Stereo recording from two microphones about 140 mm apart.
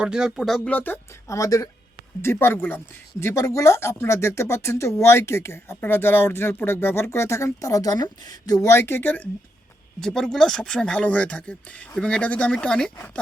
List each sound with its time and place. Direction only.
0.0 s speech: 5° right (ahead or behind)